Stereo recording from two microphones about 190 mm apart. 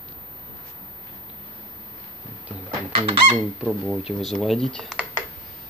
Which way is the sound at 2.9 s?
25° right (ahead or behind).